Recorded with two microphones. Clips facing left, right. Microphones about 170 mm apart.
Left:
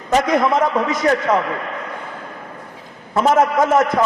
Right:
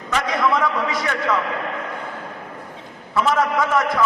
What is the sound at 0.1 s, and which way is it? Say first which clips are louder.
A man's voice: left 5 dB; 40° left (ahead or behind).